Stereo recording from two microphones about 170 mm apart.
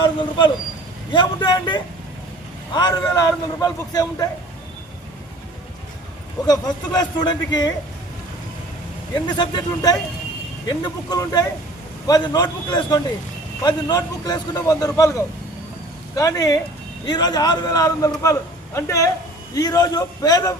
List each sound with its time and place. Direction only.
0.0 s a man's voice: 25° left (ahead or behind)
6.4 s a man's voice: 20° left (ahead or behind)
9.1 s a man's voice: 25° left (ahead or behind)
11.1 s a man's voice: 20° left (ahead or behind)
16.1 s a man's voice: 20° left (ahead or behind)